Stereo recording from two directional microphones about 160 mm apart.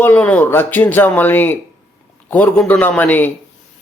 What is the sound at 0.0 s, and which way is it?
Speech, 10° left (ahead or behind).